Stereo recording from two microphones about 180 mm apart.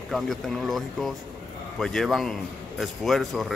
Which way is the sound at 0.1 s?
Centre (ahead or behind).